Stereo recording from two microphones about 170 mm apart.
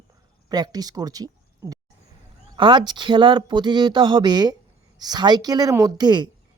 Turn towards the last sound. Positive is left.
turn(degrees=-25)  # may be behind; listen again after turning